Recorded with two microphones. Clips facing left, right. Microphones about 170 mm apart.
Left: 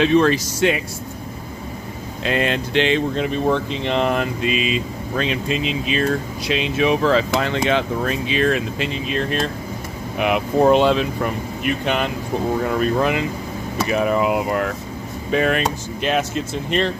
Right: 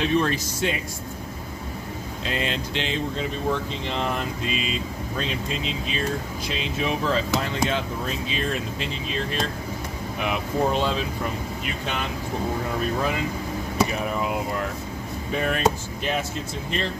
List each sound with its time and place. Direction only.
0.0 s speech: 90° left
2.2 s speech: 60° left (ahead or behind)
13.8 s speech: 80° left